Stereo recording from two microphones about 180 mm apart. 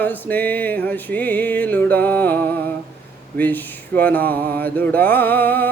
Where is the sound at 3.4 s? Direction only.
10° left (ahead or behind).